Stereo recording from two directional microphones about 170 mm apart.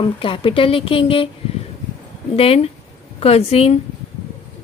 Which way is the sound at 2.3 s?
35° left (ahead or behind).